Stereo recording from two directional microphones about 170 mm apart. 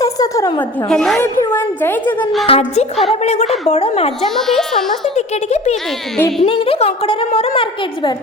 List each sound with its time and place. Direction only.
0.0 s a sound: 20° left (ahead or behind)
0.9 s a child's voice: 5° left (ahead or behind)
2.5 s a woman's voice: 35° left (ahead or behind)
4.4 s a child's voice: centre (ahead or behind)
5.1 s a woman's voice: 40° left (ahead or behind)
5.7 s a child's voice: centre (ahead or behind)
6.4 s a woman's voice: 35° left (ahead or behind)